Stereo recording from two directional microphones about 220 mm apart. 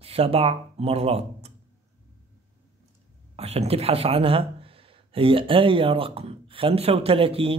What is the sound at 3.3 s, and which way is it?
Speech, 25° right (ahead or behind).